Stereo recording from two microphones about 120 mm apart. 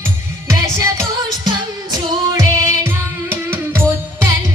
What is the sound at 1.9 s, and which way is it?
Music, 25° right (ahead or behind).